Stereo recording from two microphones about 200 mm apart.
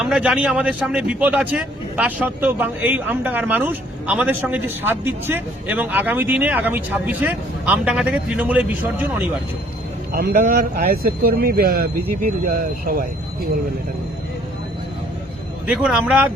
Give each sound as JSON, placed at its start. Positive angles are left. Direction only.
{"t": 0.0, "sound": "speech", "side_deg": -5}
{"t": 10.1, "sound": "a man's voice", "side_deg": -45}
{"t": 15.6, "sound": "speech", "side_deg": -5}